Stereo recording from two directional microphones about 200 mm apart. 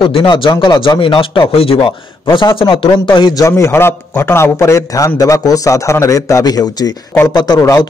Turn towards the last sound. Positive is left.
turn(degrees=15)  # may be behind; listen again after turning